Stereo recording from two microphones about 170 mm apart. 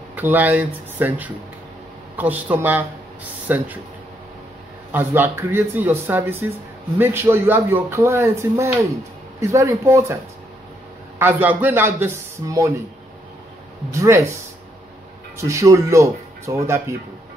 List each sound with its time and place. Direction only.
0.1 s speech: 10° right (ahead or behind)
4.9 s speech: 15° right (ahead or behind)
11.1 s speech: 10° right (ahead or behind)
13.9 s speech: 15° right (ahead or behind)
15.4 s speech: 20° right (ahead or behind)